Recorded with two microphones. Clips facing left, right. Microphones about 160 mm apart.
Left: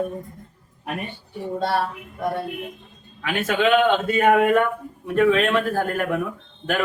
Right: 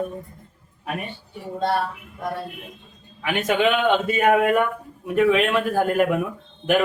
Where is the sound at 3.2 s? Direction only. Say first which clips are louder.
Even; 15° right (ahead or behind).